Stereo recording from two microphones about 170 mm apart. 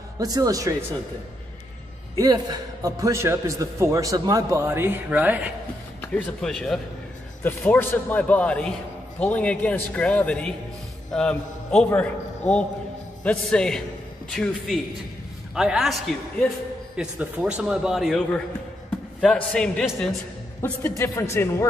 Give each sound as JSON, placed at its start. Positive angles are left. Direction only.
{"t": 0.2, "sound": "speech", "side_deg": -20}
{"t": 2.1, "sound": "a man's voice", "side_deg": -25}
{"t": 5.9, "sound": "a man's voice", "side_deg": 5}
{"t": 19.2, "sound": "a man's voice", "side_deg": 5}
{"t": 20.6, "sound": "speech", "side_deg": 15}